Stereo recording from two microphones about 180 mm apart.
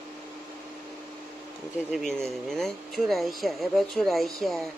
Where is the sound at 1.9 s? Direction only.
Centre (ahead or behind).